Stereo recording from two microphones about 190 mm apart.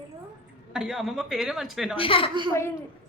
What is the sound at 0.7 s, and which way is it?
A woman's voice, 5° right (ahead or behind).